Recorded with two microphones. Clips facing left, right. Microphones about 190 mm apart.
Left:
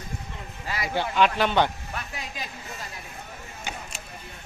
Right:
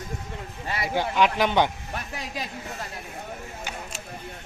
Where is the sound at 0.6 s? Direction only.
25° right (ahead or behind).